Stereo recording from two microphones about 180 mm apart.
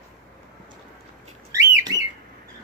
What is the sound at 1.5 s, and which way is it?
Bird, 20° right (ahead or behind).